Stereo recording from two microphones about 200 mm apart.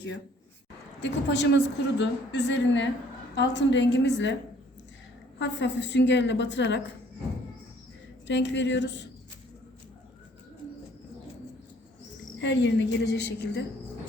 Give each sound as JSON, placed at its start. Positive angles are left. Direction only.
{"t": 1.0, "sound": "a woman's voice", "side_deg": 60}
{"t": 5.4, "sound": "a woman's voice", "side_deg": 60}
{"t": 8.3, "sound": "a woman's voice", "side_deg": 65}
{"t": 12.4, "sound": "a woman's voice", "side_deg": 60}